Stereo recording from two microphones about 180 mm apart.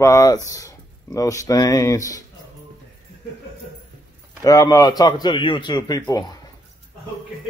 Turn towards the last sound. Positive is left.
turn(degrees=20)  # may be behind; listen again after turning